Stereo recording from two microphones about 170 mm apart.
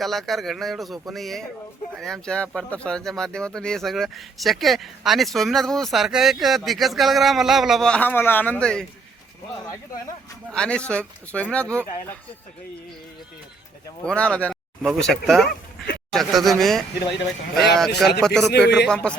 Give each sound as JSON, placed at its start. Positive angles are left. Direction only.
{"t": 0.0, "sound": "speech", "side_deg": 0}
{"t": 10.5, "sound": "speech", "side_deg": 5}
{"t": 14.0, "sound": "speech", "side_deg": 5}
{"t": 18.4, "sound": "a man's voice", "side_deg": 75}
{"t": 18.9, "sound": "speech", "side_deg": 5}